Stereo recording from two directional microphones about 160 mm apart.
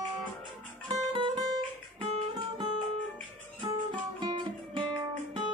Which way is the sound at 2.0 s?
30° right (ahead or behind).